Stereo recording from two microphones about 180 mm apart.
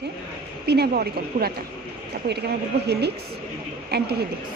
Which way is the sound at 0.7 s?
60° right (ahead or behind).